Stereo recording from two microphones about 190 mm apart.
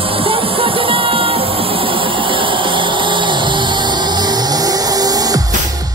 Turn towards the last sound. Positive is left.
turn(degrees=-20)  # may be behind; listen again after turning